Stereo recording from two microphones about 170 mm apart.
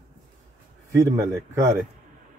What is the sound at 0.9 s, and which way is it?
Speech, 15° right (ahead or behind).